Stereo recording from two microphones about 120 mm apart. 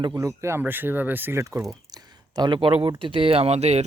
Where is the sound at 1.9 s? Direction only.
35° right (ahead or behind); by 3.9 s 65° right (ahead or behind).